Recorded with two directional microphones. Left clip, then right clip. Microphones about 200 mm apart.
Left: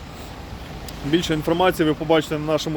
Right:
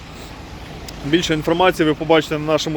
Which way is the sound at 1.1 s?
Centre (ahead or behind).